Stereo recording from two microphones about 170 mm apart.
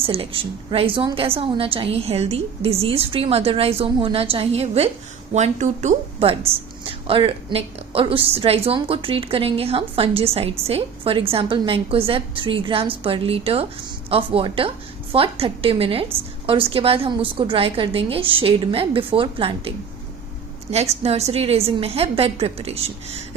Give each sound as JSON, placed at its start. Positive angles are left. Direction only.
{"t": 0.0, "sound": "a woman's voice", "side_deg": -35}